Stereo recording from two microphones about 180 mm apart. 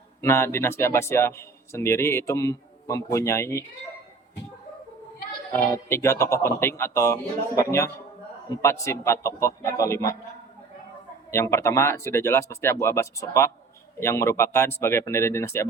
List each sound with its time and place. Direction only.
0.2 s a man's voice: 15° left (ahead or behind)
5.5 s a man's voice: 15° left (ahead or behind)
11.3 s a man's voice: 15° left (ahead or behind)